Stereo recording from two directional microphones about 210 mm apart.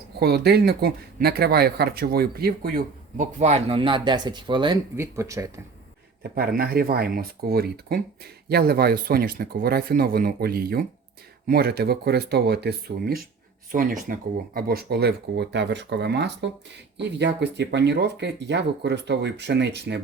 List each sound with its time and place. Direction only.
0.2 s speech: 50° right (ahead or behind); by 5.5 s 15° right (ahead or behind)
6.2 s speech: 50° right (ahead or behind)